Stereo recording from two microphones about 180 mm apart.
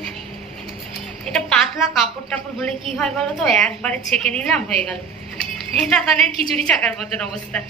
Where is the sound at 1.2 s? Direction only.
5° left (ahead or behind).